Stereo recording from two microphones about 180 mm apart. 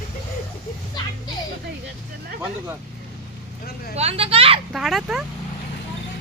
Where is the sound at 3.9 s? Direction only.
35° right (ahead or behind).